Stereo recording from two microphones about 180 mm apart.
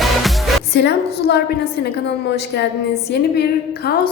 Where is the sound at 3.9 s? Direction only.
60° left (ahead or behind).